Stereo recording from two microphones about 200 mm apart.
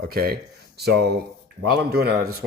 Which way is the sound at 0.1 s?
50° right (ahead or behind).